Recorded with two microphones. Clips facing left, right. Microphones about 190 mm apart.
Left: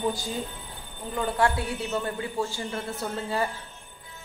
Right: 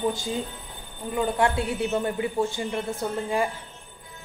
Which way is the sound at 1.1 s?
20° right (ahead or behind).